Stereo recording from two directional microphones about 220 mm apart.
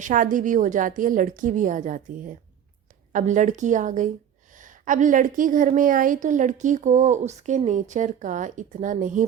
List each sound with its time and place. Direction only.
0.0 s a woman's voice: 35° right (ahead or behind)